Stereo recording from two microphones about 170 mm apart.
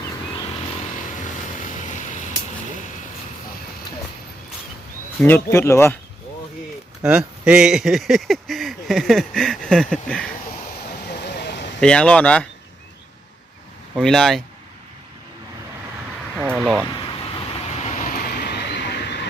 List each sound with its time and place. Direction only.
0.9 s vehicle: 50° left (ahead or behind)
5.2 s speech: 15° left (ahead or behind)
7.0 s speech: 5° right (ahead or behind)
11.0 s a sound: 75° left (ahead or behind)
11.8 s speech: 5° left (ahead or behind)
13.9 s speech: 5° left (ahead or behind)
16.6 s speech: centre (ahead or behind)
16.9 s vehicle: 30° left (ahead or behind); by 19.3 s 85° left